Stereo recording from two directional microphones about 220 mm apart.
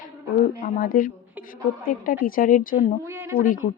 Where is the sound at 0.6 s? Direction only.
40° left (ahead or behind).